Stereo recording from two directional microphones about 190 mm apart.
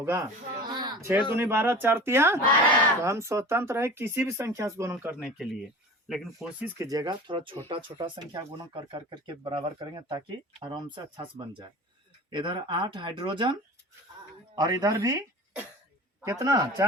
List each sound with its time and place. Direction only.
0.0 s speech: 15° right (ahead or behind)
1.3 s speech: 10° right (ahead or behind)
6.7 s speech: 20° right (ahead or behind)